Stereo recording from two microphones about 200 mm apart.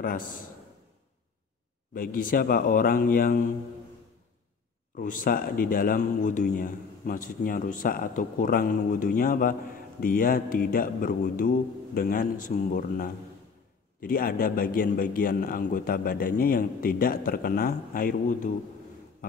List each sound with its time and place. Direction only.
0.0 s speech: 45° left (ahead or behind)
2.0 s speech: 45° left (ahead or behind)
4.9 s speech: 45° left (ahead or behind)